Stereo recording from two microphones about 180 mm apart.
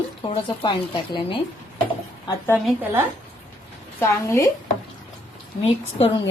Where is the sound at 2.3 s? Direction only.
15° left (ahead or behind).